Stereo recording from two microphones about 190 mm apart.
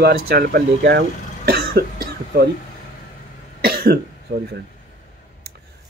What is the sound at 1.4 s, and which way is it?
Cough, 55° right (ahead or behind).